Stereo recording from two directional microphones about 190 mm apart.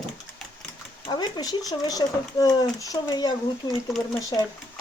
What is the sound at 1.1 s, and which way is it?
Speech, 20° left (ahead or behind).